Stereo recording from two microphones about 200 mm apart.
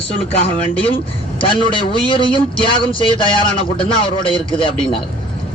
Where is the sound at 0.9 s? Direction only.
25° left (ahead or behind).